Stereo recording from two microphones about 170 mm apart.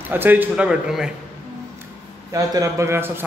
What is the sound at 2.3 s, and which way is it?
Speech, 20° right (ahead or behind).